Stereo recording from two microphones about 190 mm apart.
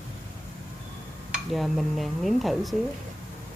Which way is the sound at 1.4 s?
Centre (ahead or behind).